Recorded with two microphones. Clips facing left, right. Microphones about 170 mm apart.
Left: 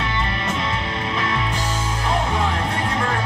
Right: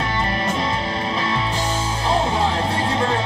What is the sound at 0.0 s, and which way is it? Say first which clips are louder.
Music: right 3 dB; 40° right (ahead or behind).